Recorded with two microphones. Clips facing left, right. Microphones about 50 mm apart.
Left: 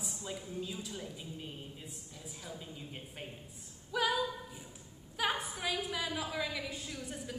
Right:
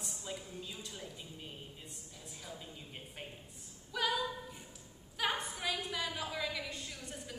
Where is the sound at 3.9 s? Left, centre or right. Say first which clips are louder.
Left 3 dB; centre.